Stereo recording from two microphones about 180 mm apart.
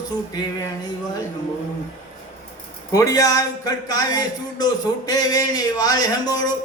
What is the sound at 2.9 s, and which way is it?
A man's voice, 20° left (ahead or behind).